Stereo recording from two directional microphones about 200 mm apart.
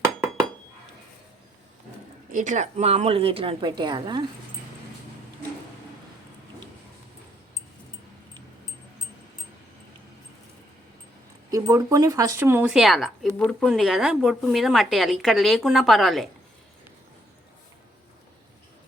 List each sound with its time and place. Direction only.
2.3 s speech: 40° right (ahead or behind); by 4.3 s 25° right (ahead or behind)
11.5 s speech: 15° right (ahead or behind); by 16.3 s centre (ahead or behind)